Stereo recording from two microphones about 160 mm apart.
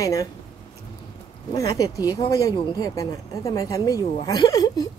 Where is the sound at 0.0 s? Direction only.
20° left (ahead or behind).